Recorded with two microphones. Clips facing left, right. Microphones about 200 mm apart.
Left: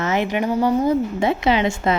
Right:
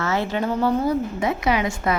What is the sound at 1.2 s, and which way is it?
Speech, 25° left (ahead or behind).